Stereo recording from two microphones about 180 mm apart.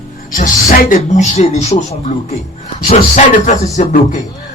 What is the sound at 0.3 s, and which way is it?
Speech, 55° left (ahead or behind).